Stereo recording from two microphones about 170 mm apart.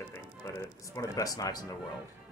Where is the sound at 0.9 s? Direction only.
20° left (ahead or behind).